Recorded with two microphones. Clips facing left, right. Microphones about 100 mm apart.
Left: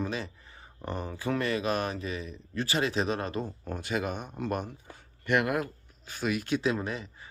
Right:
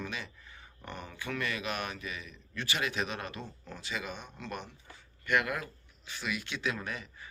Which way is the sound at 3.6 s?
50° left (ahead or behind).